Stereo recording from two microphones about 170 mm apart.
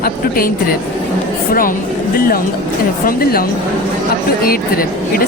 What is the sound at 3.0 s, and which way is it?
Speech, 60° left (ahead or behind).